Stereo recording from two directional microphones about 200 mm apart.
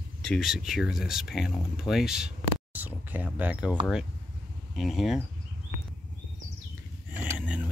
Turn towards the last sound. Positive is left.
turn(degrees=-5)  # may be behind; listen again after turning